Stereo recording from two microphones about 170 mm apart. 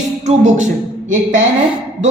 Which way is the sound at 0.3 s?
45° right (ahead or behind).